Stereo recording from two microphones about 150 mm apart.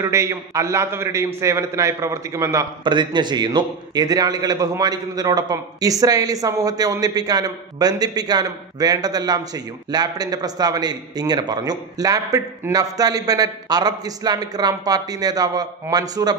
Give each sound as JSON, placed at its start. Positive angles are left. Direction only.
{"t": 0.0, "sound": "a man's voice", "side_deg": -20}
{"t": 2.8, "sound": "a man's voice", "side_deg": -30}